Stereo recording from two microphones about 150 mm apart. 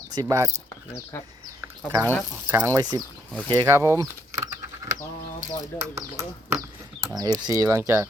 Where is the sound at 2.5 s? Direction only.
15° right (ahead or behind).